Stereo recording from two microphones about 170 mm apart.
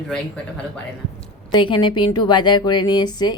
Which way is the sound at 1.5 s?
25° left (ahead or behind).